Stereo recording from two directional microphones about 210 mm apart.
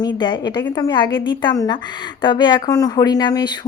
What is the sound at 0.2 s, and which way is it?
Speech, 20° left (ahead or behind).